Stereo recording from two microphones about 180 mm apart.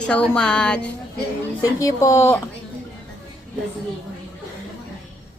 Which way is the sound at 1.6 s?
20° left (ahead or behind).